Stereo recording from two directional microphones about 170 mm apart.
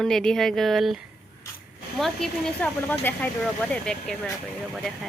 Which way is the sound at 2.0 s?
5° left (ahead or behind).